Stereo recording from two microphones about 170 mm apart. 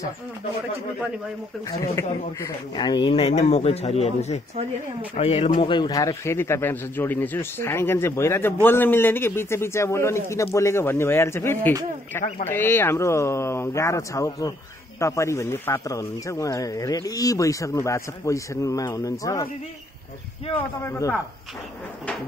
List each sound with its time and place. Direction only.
1.7 s a man's voice: 20° left (ahead or behind); by 5.5 s 40° left (ahead or behind)
5.5 s a man's voice: 25° left (ahead or behind)
20.5 s a man's voice: 15° left (ahead or behind)